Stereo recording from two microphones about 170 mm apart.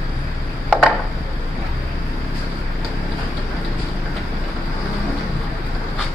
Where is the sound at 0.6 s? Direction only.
5° left (ahead or behind).